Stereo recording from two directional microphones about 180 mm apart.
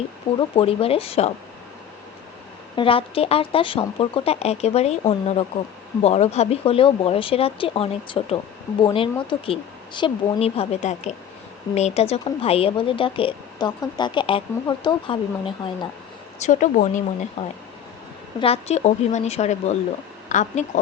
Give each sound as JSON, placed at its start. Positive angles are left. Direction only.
{"t": 0.3, "sound": "speech", "side_deg": 30}
{"t": 2.7, "sound": "a woman's voice", "side_deg": 30}
{"t": 16.4, "sound": "speech", "side_deg": 45}